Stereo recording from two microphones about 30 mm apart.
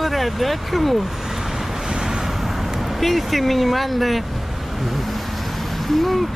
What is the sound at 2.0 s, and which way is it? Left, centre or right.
Vehicle, centre.